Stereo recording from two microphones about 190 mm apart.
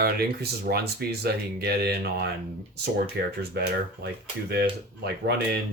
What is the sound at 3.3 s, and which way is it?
Speech, 60° right (ahead or behind).